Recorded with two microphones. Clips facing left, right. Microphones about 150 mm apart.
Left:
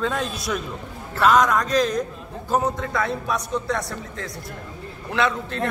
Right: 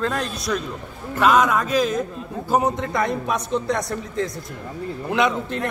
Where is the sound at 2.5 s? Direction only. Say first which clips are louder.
Right 2 dB; 20° right (ahead or behind).